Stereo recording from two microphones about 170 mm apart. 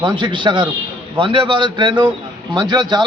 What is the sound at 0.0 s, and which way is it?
A man's voice, 25° right (ahead or behind).